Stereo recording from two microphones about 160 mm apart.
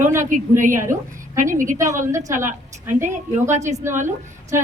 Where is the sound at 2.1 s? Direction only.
20° right (ahead or behind).